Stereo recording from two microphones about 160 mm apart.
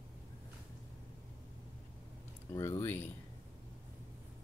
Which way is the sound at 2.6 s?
15° left (ahead or behind).